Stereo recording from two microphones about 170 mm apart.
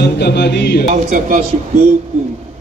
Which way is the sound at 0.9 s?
55° right (ahead or behind).